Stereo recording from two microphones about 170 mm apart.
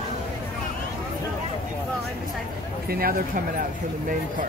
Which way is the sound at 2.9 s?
60° right (ahead or behind).